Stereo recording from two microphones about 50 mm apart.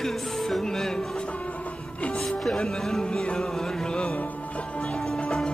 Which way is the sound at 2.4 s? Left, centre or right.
Centre.